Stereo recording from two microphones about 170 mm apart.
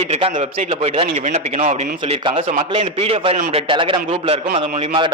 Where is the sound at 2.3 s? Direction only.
30° right (ahead or behind).